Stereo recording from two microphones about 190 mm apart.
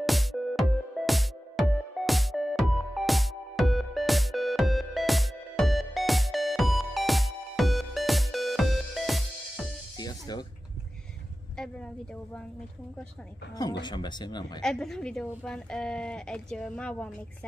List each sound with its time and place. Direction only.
0.0 s music: centre (ahead or behind)
9.9 s music: 20° left (ahead or behind)
11.5 s speech: 5° left (ahead or behind)
13.6 s speech: 20° left (ahead or behind)
14.6 s speech: centre (ahead or behind)